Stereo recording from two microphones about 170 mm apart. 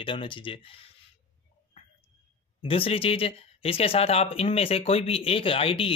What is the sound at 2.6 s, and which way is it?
Speech, 35° left (ahead or behind).